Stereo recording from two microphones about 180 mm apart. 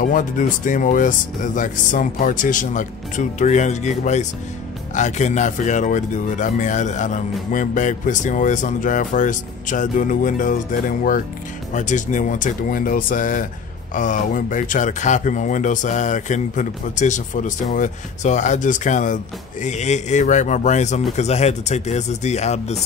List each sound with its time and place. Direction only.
0.0 s speech: 50° left (ahead or behind)